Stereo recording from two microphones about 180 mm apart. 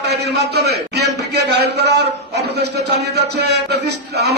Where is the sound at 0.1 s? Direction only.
65° right (ahead or behind).